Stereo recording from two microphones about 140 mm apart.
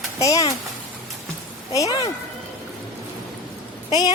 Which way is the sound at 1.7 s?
25° left (ahead or behind).